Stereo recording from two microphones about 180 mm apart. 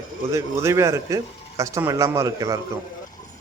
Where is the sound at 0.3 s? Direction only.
15° right (ahead or behind).